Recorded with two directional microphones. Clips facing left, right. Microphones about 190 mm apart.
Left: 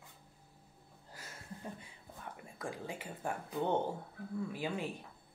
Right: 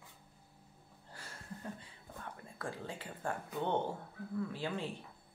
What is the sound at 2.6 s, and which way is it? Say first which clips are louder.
Speech: left 1 dB; 10° left (ahead or behind).